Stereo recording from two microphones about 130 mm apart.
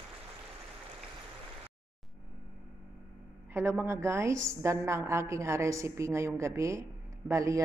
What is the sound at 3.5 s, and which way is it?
A woman's voice, 20° right (ahead or behind).